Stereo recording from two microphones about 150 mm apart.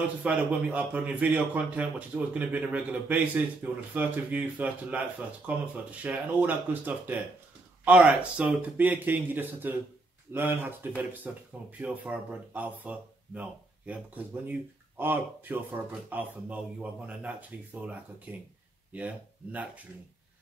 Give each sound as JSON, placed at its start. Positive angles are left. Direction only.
{"t": 0.2, "sound": "a man's voice", "side_deg": -10}